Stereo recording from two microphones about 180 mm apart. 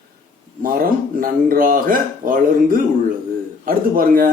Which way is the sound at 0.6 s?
55° right (ahead or behind).